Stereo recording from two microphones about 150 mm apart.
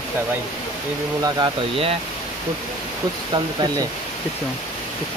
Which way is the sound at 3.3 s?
30° right (ahead or behind).